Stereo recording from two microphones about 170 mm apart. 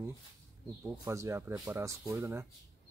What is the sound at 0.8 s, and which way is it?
Speech, 15° right (ahead or behind).